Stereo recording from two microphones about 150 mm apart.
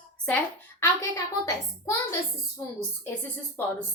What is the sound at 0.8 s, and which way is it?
A woman's voice, 20° left (ahead or behind).